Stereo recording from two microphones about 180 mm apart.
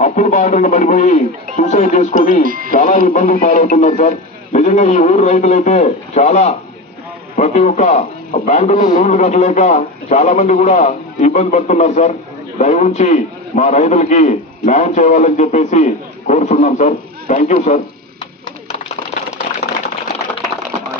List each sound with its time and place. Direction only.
0.0 s a man's voice: 40° left (ahead or behind)
2.4 s speech: 50° right (ahead or behind)
2.7 s a man's voice: 45° left (ahead or behind)